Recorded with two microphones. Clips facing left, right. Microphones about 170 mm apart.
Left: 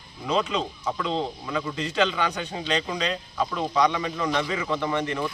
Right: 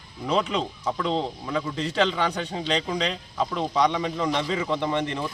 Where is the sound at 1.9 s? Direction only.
30° right (ahead or behind).